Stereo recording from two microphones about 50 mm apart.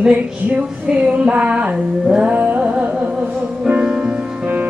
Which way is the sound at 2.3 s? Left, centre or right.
Right.